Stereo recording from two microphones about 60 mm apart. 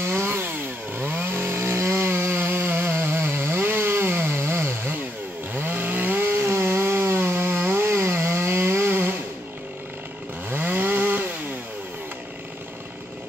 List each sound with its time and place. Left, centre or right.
0.0 s chainsaw: right
5.5 s chainsaw: right
10.5 s chainsaw: right